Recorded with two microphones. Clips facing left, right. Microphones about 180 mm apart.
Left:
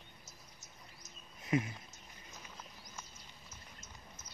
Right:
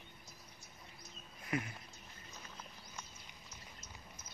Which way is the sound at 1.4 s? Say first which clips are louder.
Left 6 dB; 25° left (ahead or behind).